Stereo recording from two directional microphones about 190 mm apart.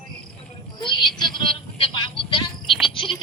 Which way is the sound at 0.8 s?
25° left (ahead or behind).